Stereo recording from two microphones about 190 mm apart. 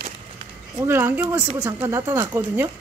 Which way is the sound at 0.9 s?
10° right (ahead or behind).